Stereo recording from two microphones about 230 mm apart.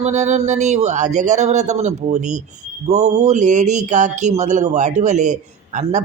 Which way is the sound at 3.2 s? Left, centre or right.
Right.